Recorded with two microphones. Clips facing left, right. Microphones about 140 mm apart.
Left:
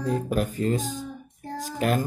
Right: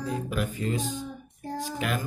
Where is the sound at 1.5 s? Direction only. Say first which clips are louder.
Left 5 dB; 40° left (ahead or behind).